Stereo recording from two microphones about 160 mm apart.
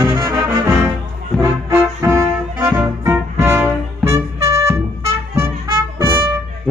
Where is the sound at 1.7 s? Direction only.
15° right (ahead or behind).